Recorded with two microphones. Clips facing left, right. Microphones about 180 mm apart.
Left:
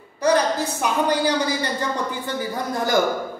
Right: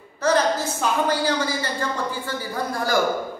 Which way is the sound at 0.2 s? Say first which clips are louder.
Left 1 dB; 15° left (ahead or behind).